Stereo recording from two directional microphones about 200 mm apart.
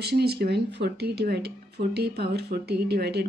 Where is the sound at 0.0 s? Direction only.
55° right (ahead or behind).